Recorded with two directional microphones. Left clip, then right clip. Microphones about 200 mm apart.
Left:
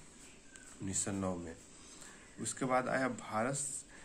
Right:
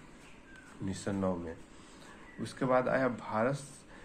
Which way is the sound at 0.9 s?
25° left (ahead or behind).